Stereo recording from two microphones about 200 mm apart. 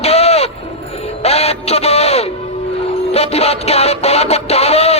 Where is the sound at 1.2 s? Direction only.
30° left (ahead or behind).